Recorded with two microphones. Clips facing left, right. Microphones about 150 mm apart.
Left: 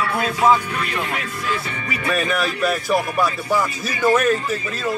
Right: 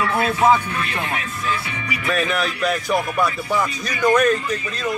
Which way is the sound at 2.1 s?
Centre (ahead or behind).